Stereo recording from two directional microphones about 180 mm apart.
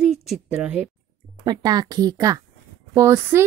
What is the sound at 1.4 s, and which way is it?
A woman's voice, 25° right (ahead or behind).